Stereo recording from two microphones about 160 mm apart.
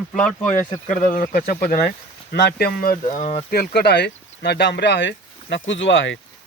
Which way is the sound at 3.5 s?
75° left (ahead or behind).